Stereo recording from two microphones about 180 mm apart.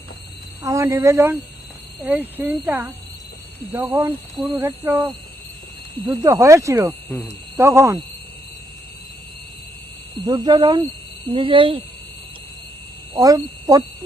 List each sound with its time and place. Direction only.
0.6 s speech: 15° right (ahead or behind)
4.4 s speech: centre (ahead or behind)
10.2 s speech: 20° right (ahead or behind)
13.1 s speech: 20° right (ahead or behind)